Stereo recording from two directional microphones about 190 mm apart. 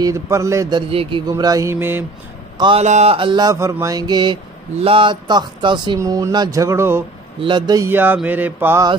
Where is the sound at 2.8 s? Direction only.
35° right (ahead or behind); by 7.0 s 15° right (ahead or behind).